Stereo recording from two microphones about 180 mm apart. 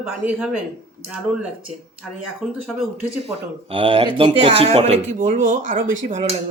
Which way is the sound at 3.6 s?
30° right (ahead or behind).